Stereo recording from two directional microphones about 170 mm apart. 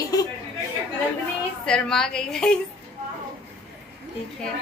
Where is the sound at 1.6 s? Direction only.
5° left (ahead or behind).